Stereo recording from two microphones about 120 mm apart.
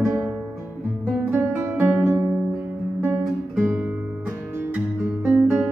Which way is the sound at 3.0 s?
15° right (ahead or behind).